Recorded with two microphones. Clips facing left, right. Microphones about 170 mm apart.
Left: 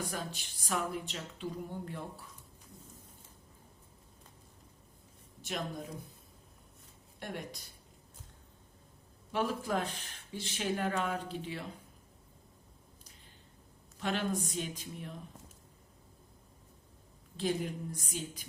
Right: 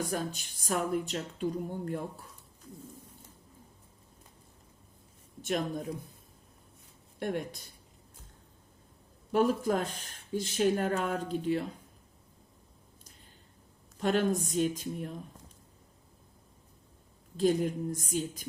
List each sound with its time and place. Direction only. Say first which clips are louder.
0.1 s speech: right 6 dB; 45° right (ahead or behind)
5.4 s a woman's voice: right 7 dB; 50° right (ahead or behind)
7.2 s speech: right 8 dB; 50° right (ahead or behind)
9.3 s speech: right 6 dB; 45° right (ahead or behind)
14.0 s speech: right 6 dB; 45° right (ahead or behind)
17.3 s speech: right 7 dB; 45° right (ahead or behind)